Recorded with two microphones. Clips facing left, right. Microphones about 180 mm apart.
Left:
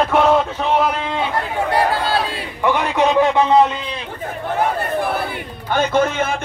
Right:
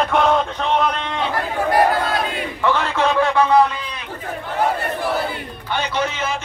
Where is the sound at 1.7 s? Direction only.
30° left (ahead or behind).